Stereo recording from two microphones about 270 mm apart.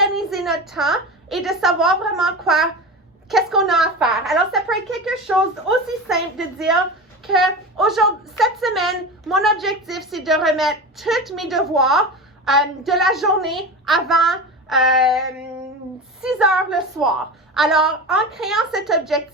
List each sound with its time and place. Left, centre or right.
0.0 s a woman's voice: centre
16.2 s a woman's voice: centre